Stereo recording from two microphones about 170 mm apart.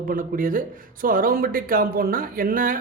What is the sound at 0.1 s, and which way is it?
Speech, 55° right (ahead or behind).